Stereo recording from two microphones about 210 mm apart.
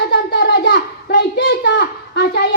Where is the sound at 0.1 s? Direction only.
50° left (ahead or behind).